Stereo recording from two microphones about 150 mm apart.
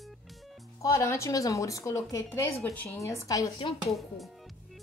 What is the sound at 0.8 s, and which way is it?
A woman's voice, 20° left (ahead or behind).